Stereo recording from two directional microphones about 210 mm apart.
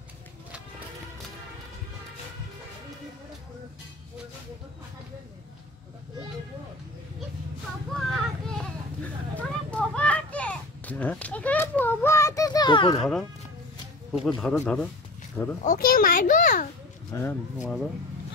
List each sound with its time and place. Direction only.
7.9 s a sound: centre (ahead or behind); by 13.0 s 20° left (ahead or behind)
14.1 s speech: centre (ahead or behind)
15.6 s a child's voice: 40° left (ahead or behind)
17.1 s speech: 10° left (ahead or behind)